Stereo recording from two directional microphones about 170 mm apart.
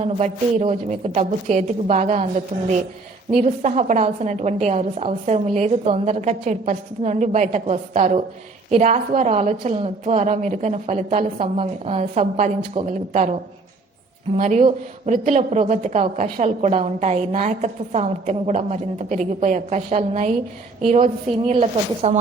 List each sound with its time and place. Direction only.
0.0 s a woman's voice: 45° right (ahead or behind)
14.3 s a woman's voice: 40° right (ahead or behind)